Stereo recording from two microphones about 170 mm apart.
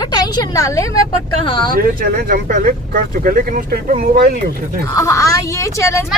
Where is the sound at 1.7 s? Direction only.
60° right (ahead or behind).